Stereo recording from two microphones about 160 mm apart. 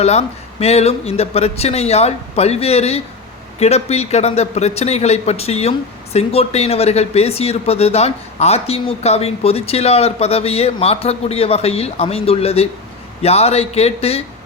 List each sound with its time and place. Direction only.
0.0 s speech: 40° left (ahead or behind)